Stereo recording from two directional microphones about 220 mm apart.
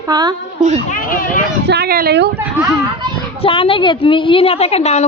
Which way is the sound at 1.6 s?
45° right (ahead or behind).